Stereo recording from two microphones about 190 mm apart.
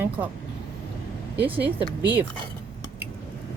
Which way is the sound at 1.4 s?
10° right (ahead or behind).